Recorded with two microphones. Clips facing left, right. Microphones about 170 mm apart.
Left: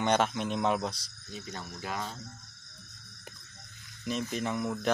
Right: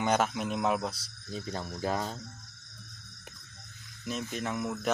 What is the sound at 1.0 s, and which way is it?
Speech, 35° right (ahead or behind).